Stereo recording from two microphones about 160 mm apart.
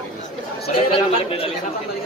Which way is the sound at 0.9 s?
35° left (ahead or behind).